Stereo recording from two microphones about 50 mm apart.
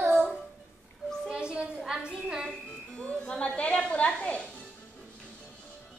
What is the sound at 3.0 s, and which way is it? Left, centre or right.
Music, left.